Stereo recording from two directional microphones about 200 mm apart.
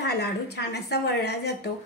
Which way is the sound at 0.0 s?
55° left (ahead or behind).